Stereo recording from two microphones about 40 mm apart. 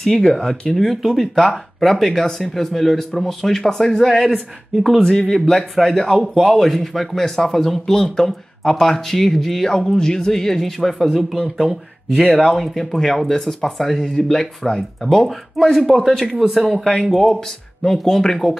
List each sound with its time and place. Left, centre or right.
0.0 s speech: centre
2.2 s speech: centre
4.8 s speech: centre
6.1 s speech: centre
11.3 s speech: centre
12.4 s speech: centre